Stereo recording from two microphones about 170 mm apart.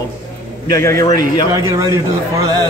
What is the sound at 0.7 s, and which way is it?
Speech, 20° left (ahead or behind).